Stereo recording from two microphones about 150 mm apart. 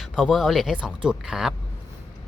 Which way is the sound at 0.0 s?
Centre (ahead or behind).